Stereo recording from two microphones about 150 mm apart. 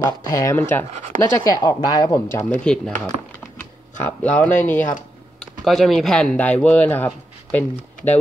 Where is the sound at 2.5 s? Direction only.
5° left (ahead or behind).